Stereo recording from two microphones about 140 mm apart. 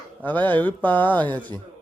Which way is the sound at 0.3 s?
10° left (ahead or behind).